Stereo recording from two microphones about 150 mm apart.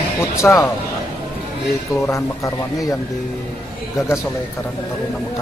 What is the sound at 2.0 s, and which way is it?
Speech, 20° left (ahead or behind).